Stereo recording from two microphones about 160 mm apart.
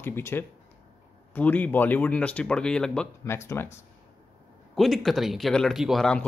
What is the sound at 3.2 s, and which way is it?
Speech, 20° left (ahead or behind).